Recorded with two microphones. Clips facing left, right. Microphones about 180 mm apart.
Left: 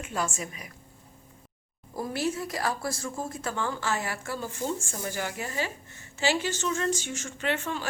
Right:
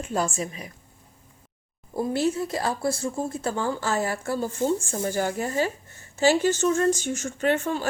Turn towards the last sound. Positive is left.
turn(degrees=-40)  # may be behind; listen again after turning